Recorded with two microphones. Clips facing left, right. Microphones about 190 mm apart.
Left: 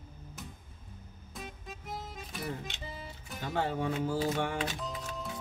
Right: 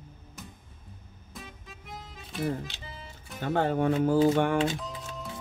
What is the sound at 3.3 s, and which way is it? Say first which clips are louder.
Speech: right 6 dB; 55° right (ahead or behind).